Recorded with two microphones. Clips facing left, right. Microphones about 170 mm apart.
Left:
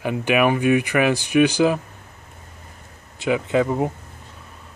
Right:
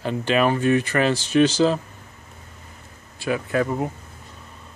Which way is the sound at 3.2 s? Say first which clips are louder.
Left 3 dB; 20° left (ahead or behind).